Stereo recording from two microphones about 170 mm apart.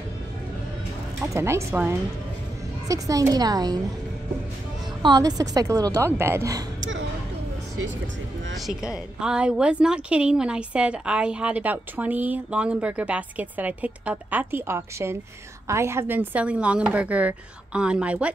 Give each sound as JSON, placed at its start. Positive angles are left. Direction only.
{"t": 1.2, "sound": "a woman's voice", "side_deg": -15}
{"t": 5.0, "sound": "a woman's voice", "side_deg": -25}
{"t": 8.5, "sound": "a woman's voice", "side_deg": 0}